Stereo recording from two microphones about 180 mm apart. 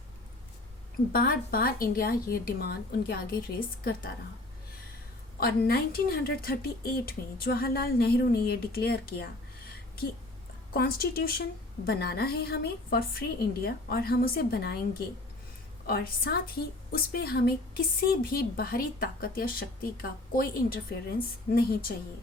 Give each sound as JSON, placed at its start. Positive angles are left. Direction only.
{"t": 1.1, "sound": "a woman's voice", "side_deg": 55}
{"t": 5.4, "sound": "a woman's voice", "side_deg": 55}
{"t": 10.8, "sound": "a woman's voice", "side_deg": 55}
{"t": 15.9, "sound": "a woman's voice", "side_deg": 60}